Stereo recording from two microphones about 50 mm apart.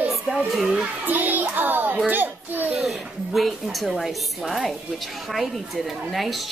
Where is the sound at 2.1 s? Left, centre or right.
Right.